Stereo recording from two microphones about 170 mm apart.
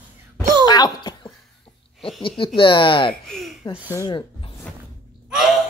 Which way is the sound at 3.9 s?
25° left (ahead or behind).